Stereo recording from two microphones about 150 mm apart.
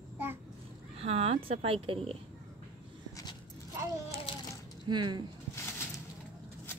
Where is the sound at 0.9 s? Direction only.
40° right (ahead or behind).